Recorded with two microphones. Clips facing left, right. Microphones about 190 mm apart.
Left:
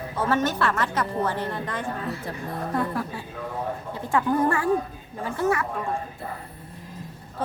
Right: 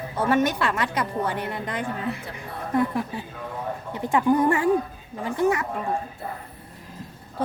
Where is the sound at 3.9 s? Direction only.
15° right (ahead or behind).